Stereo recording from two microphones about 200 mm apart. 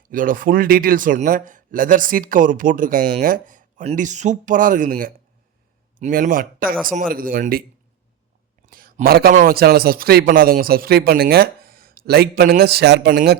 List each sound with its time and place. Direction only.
0.1 s a man's voice: 45° right (ahead or behind)
8.7 s a man's voice: 45° right (ahead or behind)